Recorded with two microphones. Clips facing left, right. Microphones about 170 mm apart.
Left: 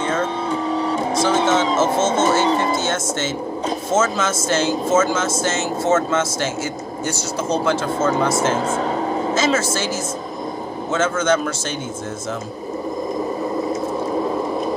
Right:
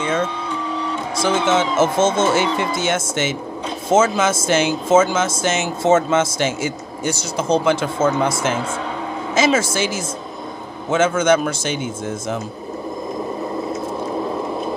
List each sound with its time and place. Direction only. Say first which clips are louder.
0.5 s printer: left 4 dB; 40° left (ahead or behind)
1.8 s speech: right 1 dB; 15° right (ahead or behind)
2.4 s speech: left 2 dB; 40° left (ahead or behind)
2.8 s speech: right 2 dB; 15° right (ahead or behind)
10.9 s speech: right 3 dB; 15° right (ahead or behind)